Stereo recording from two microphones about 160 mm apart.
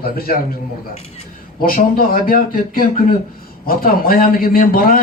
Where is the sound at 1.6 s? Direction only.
65° left (ahead or behind).